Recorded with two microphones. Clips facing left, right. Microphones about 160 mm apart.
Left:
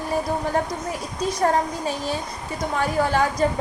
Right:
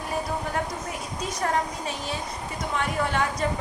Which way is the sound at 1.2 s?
35° left (ahead or behind).